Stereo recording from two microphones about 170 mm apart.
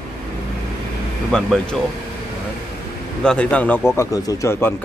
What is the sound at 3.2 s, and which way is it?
Speech, 5° left (ahead or behind).